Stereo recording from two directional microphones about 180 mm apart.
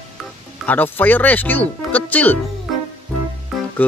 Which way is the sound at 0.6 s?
10° left (ahead or behind).